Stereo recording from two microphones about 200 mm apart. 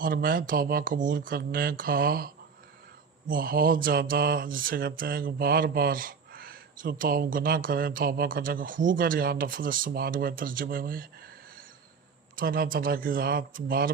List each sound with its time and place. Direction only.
0.0 s mantra: 45° right (ahead or behind)